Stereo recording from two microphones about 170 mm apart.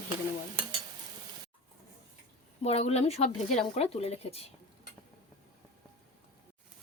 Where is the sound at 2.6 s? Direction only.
40° left (ahead or behind).